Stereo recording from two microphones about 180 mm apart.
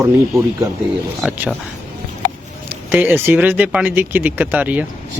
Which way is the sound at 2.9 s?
10° right (ahead or behind).